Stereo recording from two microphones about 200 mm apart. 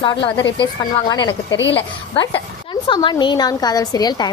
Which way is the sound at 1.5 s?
65° left (ahead or behind).